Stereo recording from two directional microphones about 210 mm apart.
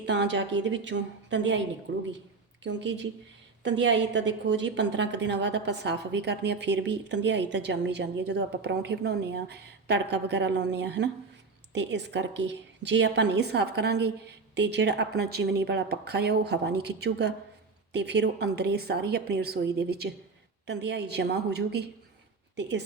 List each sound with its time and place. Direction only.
0.0 s a woman's voice: 55° right (ahead or behind)